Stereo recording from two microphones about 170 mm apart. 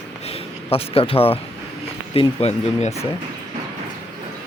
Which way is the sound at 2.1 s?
35° left (ahead or behind).